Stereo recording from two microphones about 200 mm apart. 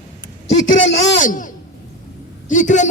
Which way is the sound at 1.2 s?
40° left (ahead or behind).